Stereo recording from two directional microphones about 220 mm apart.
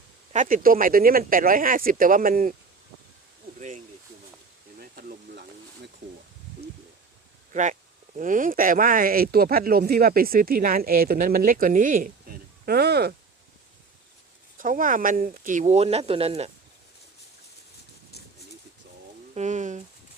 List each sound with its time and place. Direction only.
0.3 s speech: 40° right (ahead or behind)
4.8 s a sound: 40° right (ahead or behind)
7.5 s speech: 35° right (ahead or behind)
14.6 s speech: 40° right (ahead or behind)
19.3 s speech: 35° right (ahead or behind)